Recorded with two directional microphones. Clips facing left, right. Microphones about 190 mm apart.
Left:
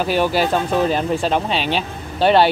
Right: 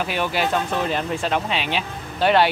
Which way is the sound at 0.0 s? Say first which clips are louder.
Left 5 dB; 35° left (ahead or behind).